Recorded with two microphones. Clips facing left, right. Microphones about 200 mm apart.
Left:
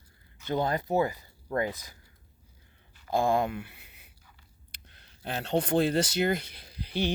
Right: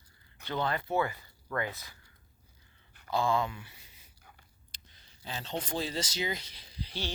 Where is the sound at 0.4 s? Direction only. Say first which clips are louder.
Left 4 dB; 45° left (ahead or behind).